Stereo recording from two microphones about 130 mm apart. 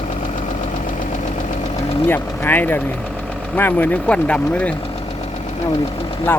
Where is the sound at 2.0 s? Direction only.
15° left (ahead or behind).